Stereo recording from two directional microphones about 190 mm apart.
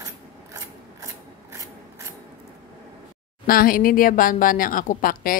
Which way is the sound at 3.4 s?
50° left (ahead or behind).